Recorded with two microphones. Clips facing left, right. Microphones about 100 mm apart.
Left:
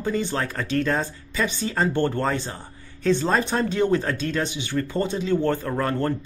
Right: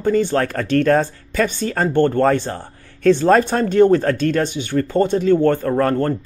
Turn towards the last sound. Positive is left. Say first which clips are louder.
# right 7 dB
turn(degrees=-45)  # may be behind; listen again after turning